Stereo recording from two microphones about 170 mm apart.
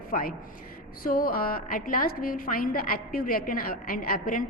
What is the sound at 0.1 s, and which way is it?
A man's voice, 55° left (ahead or behind).